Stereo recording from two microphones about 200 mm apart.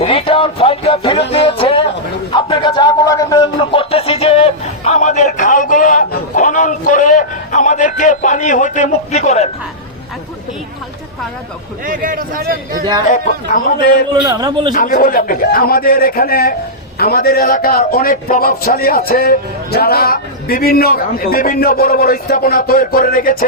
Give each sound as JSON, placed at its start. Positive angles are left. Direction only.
{"t": 0.0, "sound": "music", "side_deg": 30}
{"t": 1.3, "sound": "a sound", "side_deg": 25}
{"t": 11.9, "sound": "a man's voice", "side_deg": -45}
{"t": 13.1, "sound": "speech", "side_deg": 40}
{"t": 14.1, "sound": "a man's voice", "side_deg": -20}
{"t": 14.7, "sound": "a man's voice", "side_deg": 45}